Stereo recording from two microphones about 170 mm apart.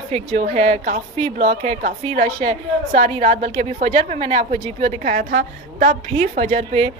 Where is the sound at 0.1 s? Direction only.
40° right (ahead or behind).